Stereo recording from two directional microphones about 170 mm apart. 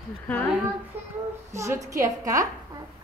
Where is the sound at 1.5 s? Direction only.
15° right (ahead or behind).